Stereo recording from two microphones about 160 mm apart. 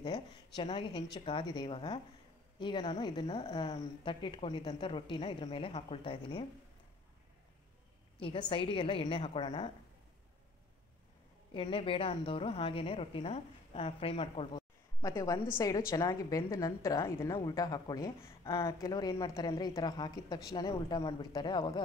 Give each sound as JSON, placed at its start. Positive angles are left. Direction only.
{"t": 0.0, "sound": "a woman's voice", "side_deg": 30}
{"t": 8.2, "sound": "a woman's voice", "side_deg": 35}
{"t": 11.5, "sound": "a woman's voice", "side_deg": 35}